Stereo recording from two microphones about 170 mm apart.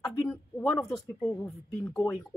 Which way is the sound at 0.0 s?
5° left (ahead or behind).